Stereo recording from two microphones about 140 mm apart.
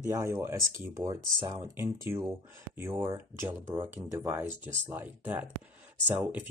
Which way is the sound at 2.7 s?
15° right (ahead or behind).